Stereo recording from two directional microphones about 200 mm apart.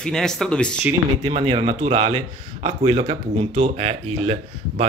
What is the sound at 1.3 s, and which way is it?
Speech, 30° right (ahead or behind).